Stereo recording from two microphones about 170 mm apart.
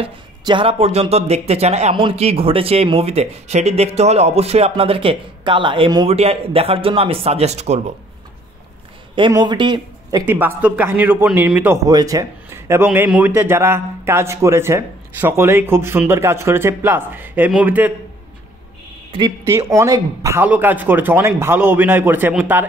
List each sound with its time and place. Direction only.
0.0 s speech: 30° right (ahead or behind)
6.0 s speech: 35° right (ahead or behind)
9.3 s speech: 25° right (ahead or behind)
10.2 s a man's voice: 10° right (ahead or behind)
19.1 s a man's voice: 20° right (ahead or behind)